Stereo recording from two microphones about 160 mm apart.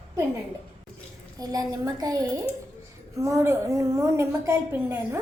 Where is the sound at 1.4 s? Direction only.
25° right (ahead or behind).